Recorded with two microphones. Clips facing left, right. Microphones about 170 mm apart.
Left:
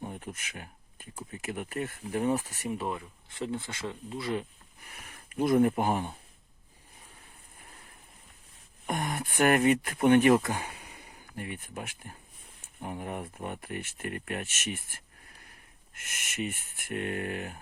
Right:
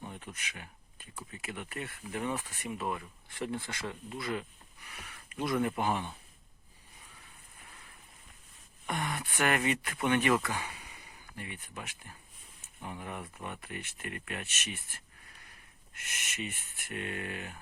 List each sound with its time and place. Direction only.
0.0 s a sound: 40° left (ahead or behind)
1.4 s speech: 45° left (ahead or behind)
2.9 s speech: 20° left (ahead or behind)
4.9 s a sound: 45° left (ahead or behind)
5.5 s speech: 40° left (ahead or behind)
8.9 s speech: 45° left (ahead or behind)
16.0 s speech: 50° left (ahead or behind)